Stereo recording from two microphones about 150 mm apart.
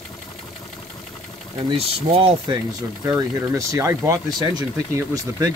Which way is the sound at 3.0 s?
20° right (ahead or behind).